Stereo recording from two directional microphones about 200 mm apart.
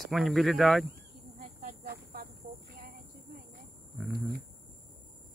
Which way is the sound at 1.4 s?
35° right (ahead or behind).